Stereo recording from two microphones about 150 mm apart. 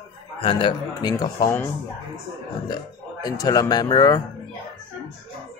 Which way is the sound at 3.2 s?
25° left (ahead or behind).